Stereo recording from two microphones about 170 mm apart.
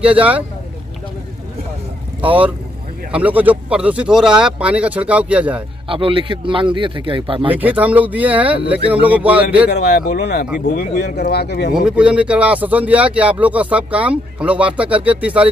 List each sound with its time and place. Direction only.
0.0 s speech: 10° right (ahead or behind)
2.2 s speech: 10° right (ahead or behind)
5.9 s speech: 30° right (ahead or behind)
7.4 s speech: 10° right (ahead or behind)
9.7 s speech: 75° left (ahead or behind)
11.7 s speech: 5° right (ahead or behind)